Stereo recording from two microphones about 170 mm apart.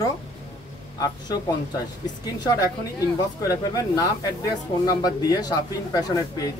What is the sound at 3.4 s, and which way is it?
A man's voice, 20° left (ahead or behind).